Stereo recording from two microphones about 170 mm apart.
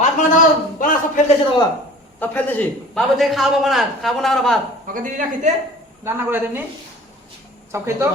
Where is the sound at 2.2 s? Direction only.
10° left (ahead or behind).